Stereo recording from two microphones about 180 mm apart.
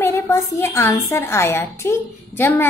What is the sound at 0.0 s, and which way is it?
A woman's voice, 15° left (ahead or behind).